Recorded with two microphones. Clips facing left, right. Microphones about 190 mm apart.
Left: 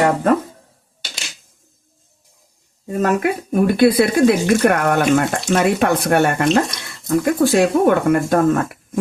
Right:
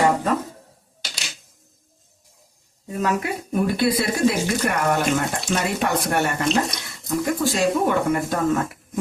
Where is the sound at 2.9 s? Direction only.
55° left (ahead or behind).